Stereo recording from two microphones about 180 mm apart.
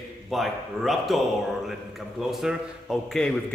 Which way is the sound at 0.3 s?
Centre (ahead or behind).